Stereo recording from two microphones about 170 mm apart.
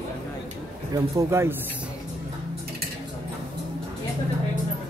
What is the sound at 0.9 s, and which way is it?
Speech, 20° right (ahead or behind).